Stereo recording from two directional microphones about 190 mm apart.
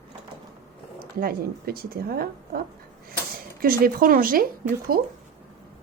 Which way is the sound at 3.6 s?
50° right (ahead or behind).